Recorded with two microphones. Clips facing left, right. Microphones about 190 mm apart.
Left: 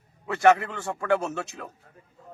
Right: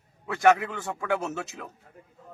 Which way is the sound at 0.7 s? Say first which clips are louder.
Left 1 dB; centre (ahead or behind).